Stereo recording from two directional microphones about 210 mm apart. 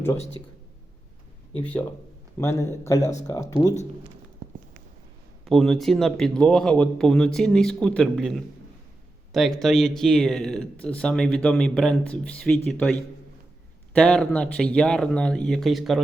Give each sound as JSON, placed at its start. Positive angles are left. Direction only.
{"t": 1.5, "sound": "speech", "side_deg": 5}
{"t": 5.5, "sound": "speech", "side_deg": 0}